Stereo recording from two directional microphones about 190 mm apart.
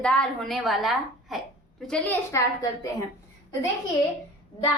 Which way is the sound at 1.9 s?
10° left (ahead or behind).